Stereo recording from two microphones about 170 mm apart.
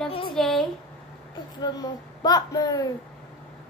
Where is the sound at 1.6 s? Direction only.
25° left (ahead or behind).